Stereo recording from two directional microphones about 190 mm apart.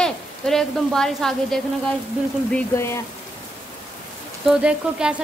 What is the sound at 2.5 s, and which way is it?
Speech, 15° left (ahead or behind).